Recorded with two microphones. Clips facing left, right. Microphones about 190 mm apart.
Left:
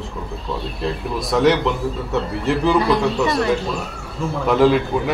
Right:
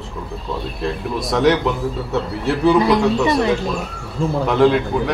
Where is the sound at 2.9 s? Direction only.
20° right (ahead or behind).